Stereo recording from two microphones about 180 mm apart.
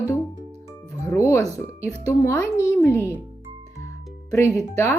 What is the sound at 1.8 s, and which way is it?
Speech, 15° left (ahead or behind).